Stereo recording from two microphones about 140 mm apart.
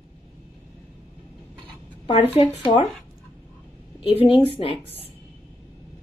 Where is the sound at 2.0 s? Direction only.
45° left (ahead or behind).